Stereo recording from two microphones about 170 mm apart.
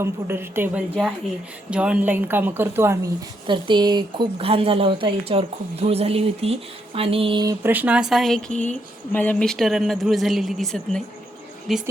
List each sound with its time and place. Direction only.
0.0 s a woman's voice: 15° right (ahead or behind)
3.4 s speech: 30° right (ahead or behind)
7.4 s a woman's voice: 10° right (ahead or behind)